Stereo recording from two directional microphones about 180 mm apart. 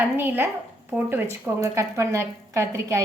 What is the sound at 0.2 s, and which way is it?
A woman's voice, 10° right (ahead or behind).